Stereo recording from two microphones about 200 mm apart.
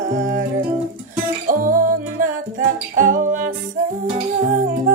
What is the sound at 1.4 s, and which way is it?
Music, 45° right (ahead or behind).